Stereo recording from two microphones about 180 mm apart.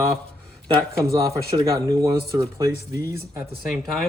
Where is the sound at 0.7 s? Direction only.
20° right (ahead or behind).